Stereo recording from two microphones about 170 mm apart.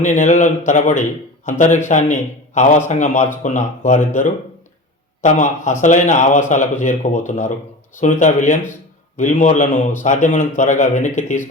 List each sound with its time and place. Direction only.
0.0 s a man's voice: 45° left (ahead or behind)